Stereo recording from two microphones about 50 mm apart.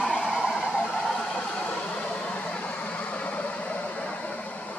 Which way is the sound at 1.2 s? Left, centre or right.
Centre.